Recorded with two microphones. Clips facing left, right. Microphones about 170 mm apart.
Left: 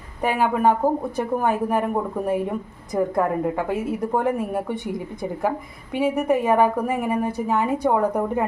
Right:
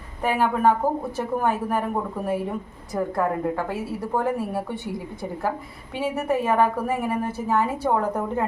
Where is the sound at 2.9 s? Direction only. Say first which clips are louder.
Left 3 dB; 15° left (ahead or behind).